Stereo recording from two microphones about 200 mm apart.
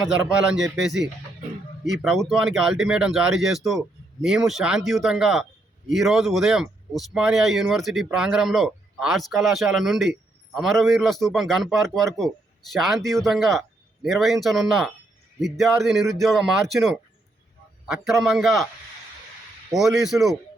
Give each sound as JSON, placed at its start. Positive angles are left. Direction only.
{"t": 0.6, "sound": "speech", "side_deg": 0}
{"t": 18.0, "sound": "speech", "side_deg": 0}
{"t": 19.7, "sound": "speech", "side_deg": 0}